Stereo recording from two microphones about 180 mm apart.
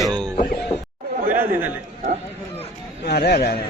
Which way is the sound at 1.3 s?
10° right (ahead or behind).